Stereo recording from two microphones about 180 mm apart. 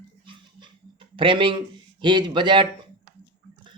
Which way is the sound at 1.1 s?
30° right (ahead or behind).